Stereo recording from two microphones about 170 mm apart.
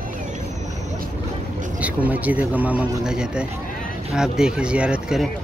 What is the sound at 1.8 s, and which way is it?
Speech, 10° right (ahead or behind).